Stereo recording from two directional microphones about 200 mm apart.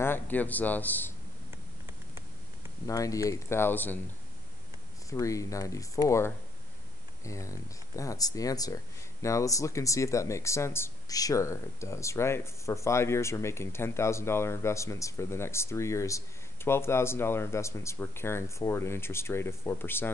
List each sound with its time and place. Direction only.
0.0 s a man's voice: 10° left (ahead or behind)
2.9 s speech: 15° left (ahead or behind)
5.1 s speech: 15° left (ahead or behind)